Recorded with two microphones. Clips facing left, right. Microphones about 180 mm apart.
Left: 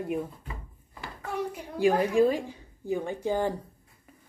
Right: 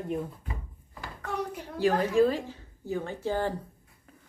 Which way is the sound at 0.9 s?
10° left (ahead or behind).